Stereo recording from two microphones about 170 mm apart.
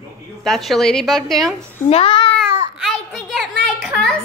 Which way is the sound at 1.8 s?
35° left (ahead or behind).